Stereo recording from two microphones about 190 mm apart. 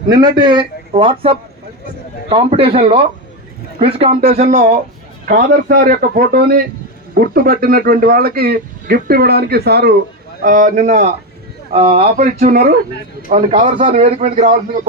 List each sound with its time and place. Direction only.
0.1 s a man's voice: 20° right (ahead or behind); by 10.0 s 55° right (ahead or behind)
10.4 s speech: 45° right (ahead or behind)
11.7 s speech: 30° right (ahead or behind)